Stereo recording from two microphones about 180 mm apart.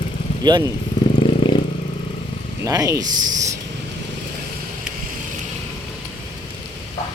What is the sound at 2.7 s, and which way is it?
Speech, 15° right (ahead or behind).